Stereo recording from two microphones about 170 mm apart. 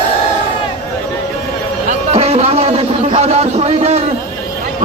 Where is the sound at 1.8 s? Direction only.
35° right (ahead or behind).